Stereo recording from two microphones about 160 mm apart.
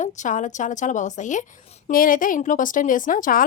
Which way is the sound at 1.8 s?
60° left (ahead or behind).